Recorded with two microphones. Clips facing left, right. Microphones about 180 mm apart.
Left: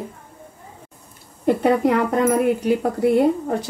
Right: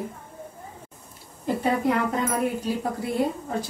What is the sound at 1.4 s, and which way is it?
Speech, 70° left (ahead or behind).